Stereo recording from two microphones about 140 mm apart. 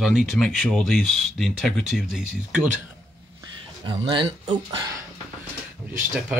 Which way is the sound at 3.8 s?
35° right (ahead or behind).